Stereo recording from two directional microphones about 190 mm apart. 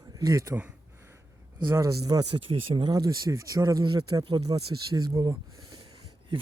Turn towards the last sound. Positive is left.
turn(degrees=-25)  # may be behind; listen again after turning